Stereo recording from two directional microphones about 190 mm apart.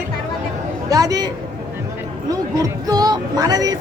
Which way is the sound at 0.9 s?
20° right (ahead or behind).